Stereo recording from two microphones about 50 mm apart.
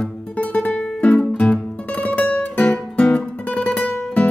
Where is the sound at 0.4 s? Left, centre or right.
Left.